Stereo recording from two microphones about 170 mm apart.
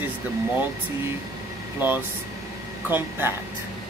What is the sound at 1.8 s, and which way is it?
Speech, 10° right (ahead or behind).